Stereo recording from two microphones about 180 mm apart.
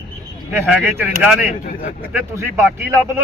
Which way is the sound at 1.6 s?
50° left (ahead or behind).